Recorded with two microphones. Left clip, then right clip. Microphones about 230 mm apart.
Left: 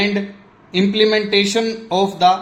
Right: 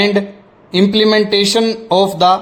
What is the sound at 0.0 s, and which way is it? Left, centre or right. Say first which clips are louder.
A man's voice: right 6 dB; right.